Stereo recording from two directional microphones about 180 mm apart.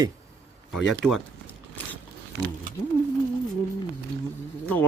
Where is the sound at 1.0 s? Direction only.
5° left (ahead or behind).